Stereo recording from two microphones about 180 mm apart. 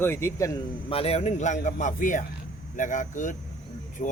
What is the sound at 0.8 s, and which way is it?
A man's voice, 30° left (ahead or behind).